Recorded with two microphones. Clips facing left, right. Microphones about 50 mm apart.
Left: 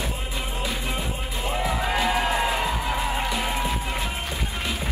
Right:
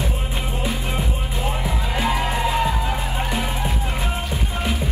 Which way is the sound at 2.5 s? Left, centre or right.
Right.